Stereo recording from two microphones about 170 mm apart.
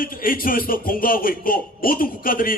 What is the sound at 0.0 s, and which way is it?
Speech, 55° left (ahead or behind).